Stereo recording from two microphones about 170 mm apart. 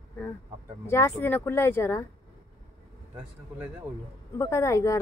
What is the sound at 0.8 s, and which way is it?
Speech, 15° left (ahead or behind).